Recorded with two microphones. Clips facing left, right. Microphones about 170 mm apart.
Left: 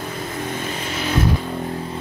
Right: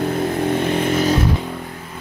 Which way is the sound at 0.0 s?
60° right (ahead or behind).